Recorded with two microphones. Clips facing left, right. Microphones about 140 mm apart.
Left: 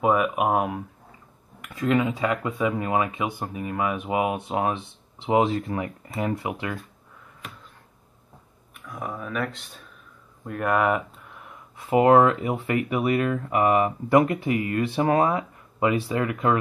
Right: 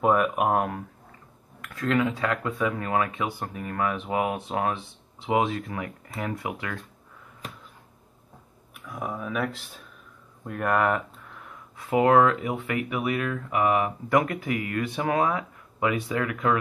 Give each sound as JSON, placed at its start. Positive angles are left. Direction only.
{"t": 0.0, "sound": "speech", "side_deg": 5}
{"t": 1.7, "sound": "speech", "side_deg": 20}
{"t": 8.7, "sound": "speech", "side_deg": 0}
{"t": 11.8, "sound": "speech", "side_deg": 25}
{"t": 14.0, "sound": "speech", "side_deg": 25}